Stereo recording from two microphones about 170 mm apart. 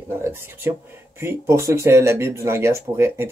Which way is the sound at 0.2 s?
15° right (ahead or behind).